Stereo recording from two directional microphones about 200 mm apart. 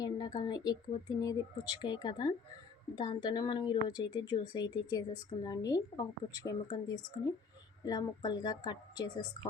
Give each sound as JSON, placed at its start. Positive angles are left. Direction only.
{"t": 0.0, "sound": "a woman's voice", "side_deg": 20}